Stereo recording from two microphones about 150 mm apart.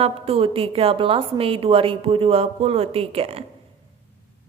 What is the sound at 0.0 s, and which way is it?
A woman's voice, 40° right (ahead or behind).